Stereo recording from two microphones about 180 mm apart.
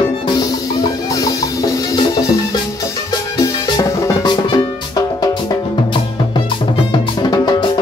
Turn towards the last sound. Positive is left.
turn(degrees=20)  # may be behind; listen again after turning